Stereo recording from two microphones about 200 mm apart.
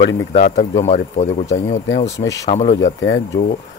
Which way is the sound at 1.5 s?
65° left (ahead or behind).